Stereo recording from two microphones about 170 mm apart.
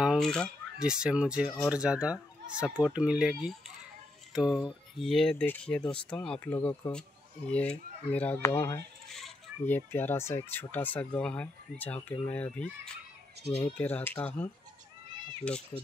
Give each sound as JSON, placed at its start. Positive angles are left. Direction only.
{"t": 0.0, "sound": "speech", "side_deg": 0}
{"t": 4.6, "sound": "speech", "side_deg": 0}
{"t": 9.1, "sound": "speech", "side_deg": 5}